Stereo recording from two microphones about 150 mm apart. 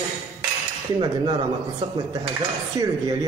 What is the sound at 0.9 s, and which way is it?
Speech, 35° right (ahead or behind).